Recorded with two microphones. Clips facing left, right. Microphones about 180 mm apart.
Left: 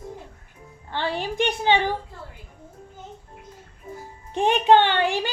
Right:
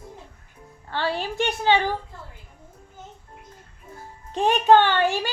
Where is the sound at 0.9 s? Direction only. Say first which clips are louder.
Even; 20° left (ahead or behind).